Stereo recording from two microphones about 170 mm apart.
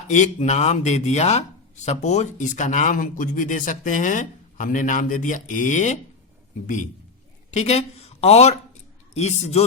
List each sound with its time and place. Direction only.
0.1 s speech: 45° left (ahead or behind)
7.5 s a man's voice: 40° left (ahead or behind)